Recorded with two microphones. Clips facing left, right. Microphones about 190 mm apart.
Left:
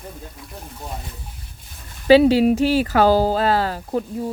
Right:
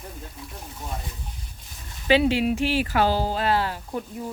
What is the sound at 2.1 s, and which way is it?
Speech, 35° left (ahead or behind).